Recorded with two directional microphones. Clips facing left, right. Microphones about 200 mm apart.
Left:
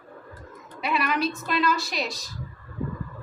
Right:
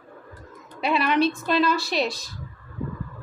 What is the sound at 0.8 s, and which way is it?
A woman's voice, 30° right (ahead or behind).